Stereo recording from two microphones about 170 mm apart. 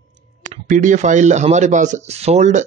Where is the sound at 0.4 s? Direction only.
45° right (ahead or behind).